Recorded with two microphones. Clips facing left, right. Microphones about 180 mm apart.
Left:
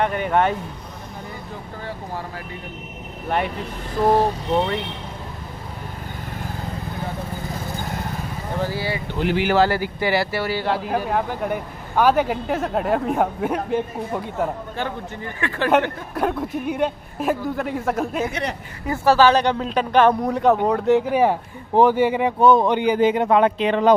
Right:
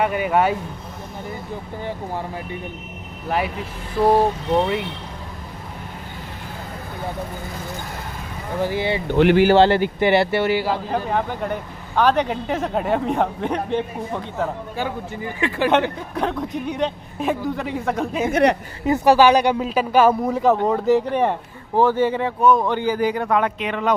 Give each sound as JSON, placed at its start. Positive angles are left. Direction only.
{"t": 0.0, "sound": "speech", "side_deg": -5}
{"t": 3.3, "sound": "speech", "side_deg": -5}
{"t": 8.6, "sound": "speech", "side_deg": -20}
{"t": 9.0, "sound": "speech", "side_deg": -65}
{"t": 9.4, "sound": "speech", "side_deg": -30}
{"t": 10.9, "sound": "speech", "side_deg": 5}
{"t": 14.8, "sound": "speech", "side_deg": -10}
{"t": 16.2, "sound": "speech", "side_deg": 5}
{"t": 18.3, "sound": "a woman's voice", "side_deg": -70}
{"t": 18.9, "sound": "speech", "side_deg": -15}
{"t": 22.4, "sound": "a man's voice", "side_deg": 30}
{"t": 22.7, "sound": "a man's voice", "side_deg": 20}